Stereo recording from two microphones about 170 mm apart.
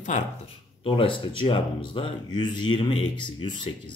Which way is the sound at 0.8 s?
30° left (ahead or behind).